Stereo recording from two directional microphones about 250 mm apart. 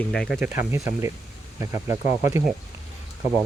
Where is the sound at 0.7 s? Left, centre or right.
Centre.